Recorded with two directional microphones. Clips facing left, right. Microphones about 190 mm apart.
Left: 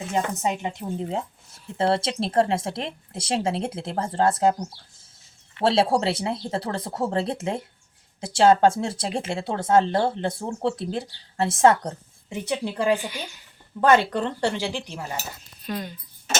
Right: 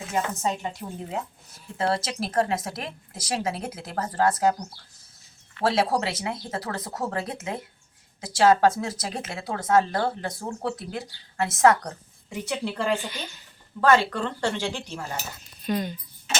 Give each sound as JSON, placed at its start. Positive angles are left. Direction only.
{"t": 0.4, "sound": "a woman's voice", "side_deg": 20}
{"t": 5.5, "sound": "a woman's voice", "side_deg": 25}
{"t": 15.6, "sound": "speech", "side_deg": 0}